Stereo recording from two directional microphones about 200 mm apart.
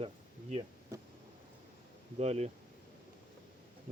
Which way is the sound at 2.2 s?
35° right (ahead or behind).